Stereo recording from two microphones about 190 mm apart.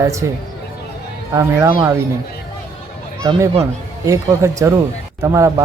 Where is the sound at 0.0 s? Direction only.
15° right (ahead or behind).